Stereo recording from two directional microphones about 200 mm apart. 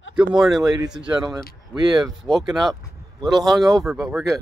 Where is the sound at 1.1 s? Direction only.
20° right (ahead or behind).